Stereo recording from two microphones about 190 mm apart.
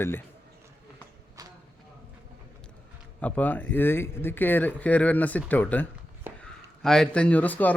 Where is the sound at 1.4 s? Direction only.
20° right (ahead or behind).